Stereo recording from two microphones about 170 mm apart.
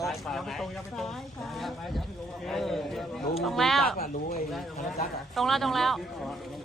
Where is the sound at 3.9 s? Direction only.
60° left (ahead or behind).